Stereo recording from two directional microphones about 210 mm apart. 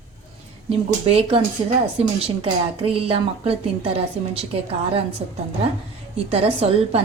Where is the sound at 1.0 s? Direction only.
30° right (ahead or behind).